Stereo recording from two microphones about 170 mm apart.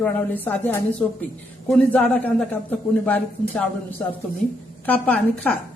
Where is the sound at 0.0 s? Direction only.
10° left (ahead or behind).